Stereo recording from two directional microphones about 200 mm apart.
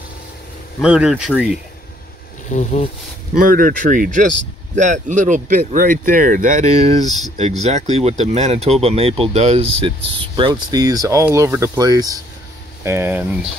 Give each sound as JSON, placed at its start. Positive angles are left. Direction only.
{"t": 0.7, "sound": "speech", "side_deg": -5}
{"t": 2.5, "sound": "speech", "side_deg": 35}
{"t": 3.3, "sound": "speech", "side_deg": -45}
{"t": 7.1, "sound": "speech", "side_deg": 0}
{"t": 7.3, "sound": "speech", "side_deg": -30}